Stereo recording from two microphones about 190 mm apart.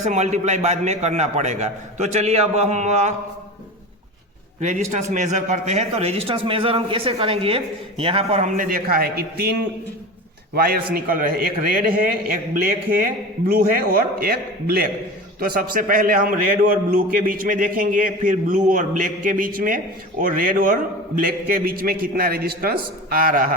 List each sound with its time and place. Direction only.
0.0 s a man's voice: 40° right (ahead or behind)
4.6 s a man's voice: 40° right (ahead or behind)